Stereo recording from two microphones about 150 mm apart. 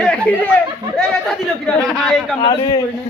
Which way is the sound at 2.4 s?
25° left (ahead or behind).